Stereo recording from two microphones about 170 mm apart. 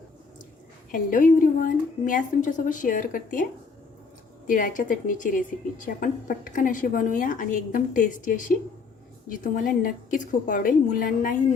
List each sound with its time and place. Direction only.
0.9 s a woman's voice: 50° left (ahead or behind)
4.4 s a woman's voice: 50° left (ahead or behind)